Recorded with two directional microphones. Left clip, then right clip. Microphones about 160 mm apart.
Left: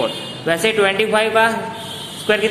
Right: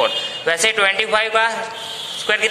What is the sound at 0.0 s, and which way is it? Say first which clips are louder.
A man's voice: right 3 dB; 25° right (ahead or behind).